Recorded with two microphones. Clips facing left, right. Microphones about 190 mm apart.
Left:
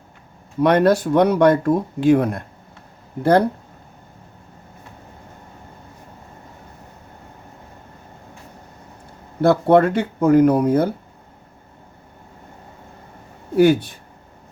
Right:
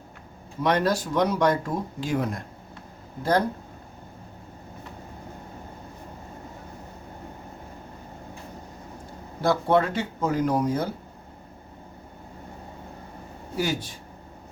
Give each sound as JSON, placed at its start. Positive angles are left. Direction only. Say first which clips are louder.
{"t": 0.6, "sound": "speech", "louder": "left 8 dB", "side_deg": 60}
{"t": 9.4, "sound": "speech", "louder": "left 8 dB", "side_deg": 60}
{"t": 13.6, "sound": "speech", "louder": "left 13 dB", "side_deg": 60}